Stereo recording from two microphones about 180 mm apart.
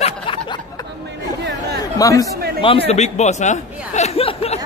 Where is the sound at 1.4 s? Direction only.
70° right (ahead or behind).